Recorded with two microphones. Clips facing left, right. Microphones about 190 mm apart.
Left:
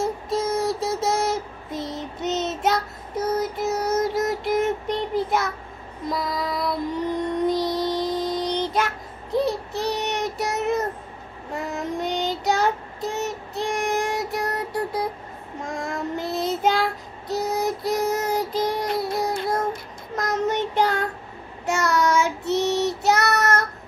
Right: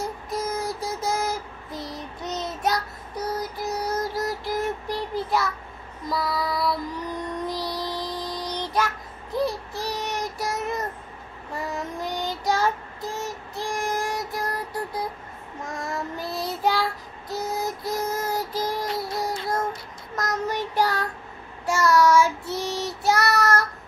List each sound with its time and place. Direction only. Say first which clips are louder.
0.0 s child singing: left 5 dB; 25° left (ahead or behind)
6.0 s music: even; 20° left (ahead or behind)
11.5 s child singing: left 3 dB; 20° left (ahead or behind)
16.2 s child singing: left 4 dB; 20° left (ahead or behind)
20.4 s child singing: left 3 dB; 20° left (ahead or behind)